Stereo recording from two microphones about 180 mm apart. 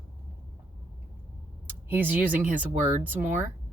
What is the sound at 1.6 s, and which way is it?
Speech, 10° right (ahead or behind).